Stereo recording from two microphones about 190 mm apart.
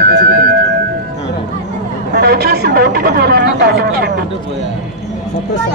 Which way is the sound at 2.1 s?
55° right (ahead or behind).